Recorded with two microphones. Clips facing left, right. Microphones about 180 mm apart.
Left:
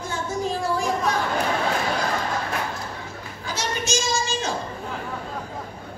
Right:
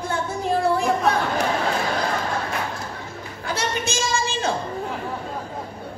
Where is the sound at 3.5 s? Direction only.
60° right (ahead or behind).